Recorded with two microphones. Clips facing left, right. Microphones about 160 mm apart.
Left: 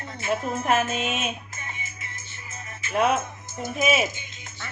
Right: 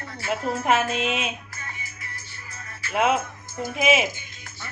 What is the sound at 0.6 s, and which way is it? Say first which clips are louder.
Music: right 2 dB; 90° right.